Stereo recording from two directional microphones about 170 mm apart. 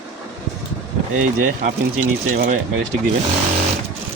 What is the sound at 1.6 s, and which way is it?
Speech, 50° right (ahead or behind).